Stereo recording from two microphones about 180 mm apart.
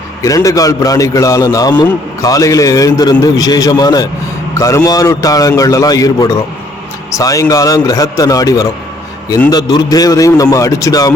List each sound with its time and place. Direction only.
0.2 s a man's voice: 20° left (ahead or behind)